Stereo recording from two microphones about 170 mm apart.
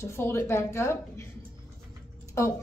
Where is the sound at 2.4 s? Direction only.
15° left (ahead or behind).